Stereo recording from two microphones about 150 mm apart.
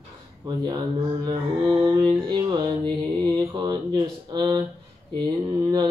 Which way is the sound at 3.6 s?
30° right (ahead or behind).